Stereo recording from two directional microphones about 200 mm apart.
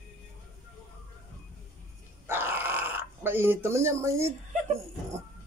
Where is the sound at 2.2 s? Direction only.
10° right (ahead or behind).